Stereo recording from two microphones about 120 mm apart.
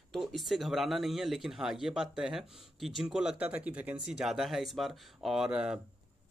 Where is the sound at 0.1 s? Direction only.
Centre (ahead or behind).